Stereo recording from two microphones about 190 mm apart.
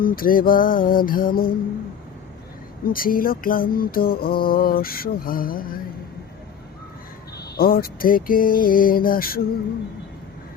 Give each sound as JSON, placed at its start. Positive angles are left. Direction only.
{"t": 0.0, "sound": "music", "side_deg": 50}
{"t": 2.8, "sound": "music", "side_deg": 50}
{"t": 7.3, "sound": "music", "side_deg": 55}